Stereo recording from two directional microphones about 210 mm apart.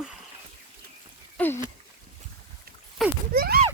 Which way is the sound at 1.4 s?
5° left (ahead or behind).